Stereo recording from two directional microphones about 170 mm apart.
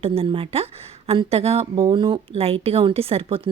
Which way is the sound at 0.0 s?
35° right (ahead or behind).